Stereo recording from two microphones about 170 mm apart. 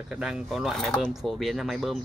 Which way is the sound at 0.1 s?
5° right (ahead or behind).